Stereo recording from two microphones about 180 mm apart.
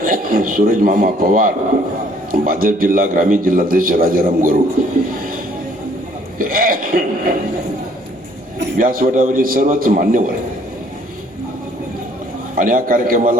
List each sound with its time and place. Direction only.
0.0 s a man's voice: 50° right (ahead or behind)
6.4 s a man's voice: 50° right (ahead or behind)
8.8 s a man's voice: 50° right (ahead or behind)
12.5 s a man's voice: 50° right (ahead or behind)